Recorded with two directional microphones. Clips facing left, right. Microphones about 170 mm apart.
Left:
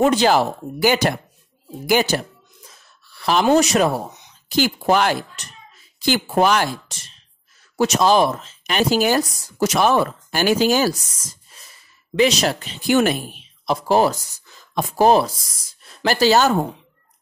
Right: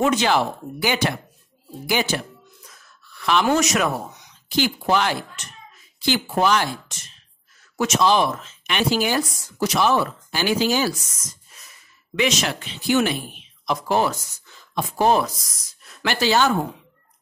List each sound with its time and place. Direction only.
0.0 s speech: 35° left (ahead or behind)
2.6 s a sound: 30° left (ahead or behind)
3.4 s speech: 30° left (ahead or behind)
4.5 s speech: 45° left (ahead or behind)
6.9 s speech: 35° left (ahead or behind)
11.5 s a sound: 30° left (ahead or behind)
12.2 s speech: 35° left (ahead or behind)
13.7 s speech: 35° left (ahead or behind)